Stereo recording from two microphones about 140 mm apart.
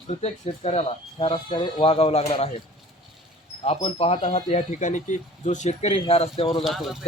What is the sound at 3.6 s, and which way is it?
Speech, 45° left (ahead or behind).